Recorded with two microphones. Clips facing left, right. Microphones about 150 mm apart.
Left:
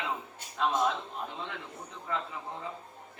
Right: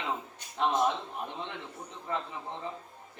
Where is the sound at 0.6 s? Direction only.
25° right (ahead or behind).